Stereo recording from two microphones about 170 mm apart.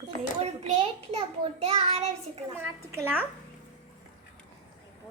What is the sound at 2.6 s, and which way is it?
Speech, 15° right (ahead or behind).